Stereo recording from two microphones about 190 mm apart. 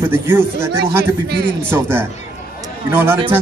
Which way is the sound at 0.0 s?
10° right (ahead or behind).